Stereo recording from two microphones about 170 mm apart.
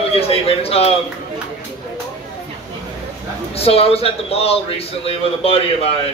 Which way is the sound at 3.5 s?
35° left (ahead or behind).